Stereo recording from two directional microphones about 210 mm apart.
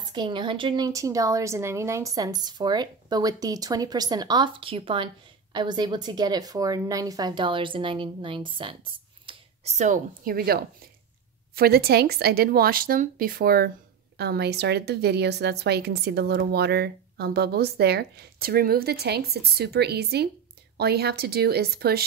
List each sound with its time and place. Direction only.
0.1 s a woman's voice: 20° right (ahead or behind); by 22.0 s 50° right (ahead or behind)